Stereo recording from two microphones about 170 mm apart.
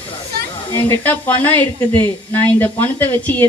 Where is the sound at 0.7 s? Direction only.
10° left (ahead or behind).